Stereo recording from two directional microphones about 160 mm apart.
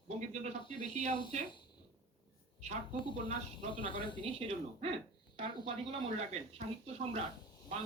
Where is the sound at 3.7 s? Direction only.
30° left (ahead or behind).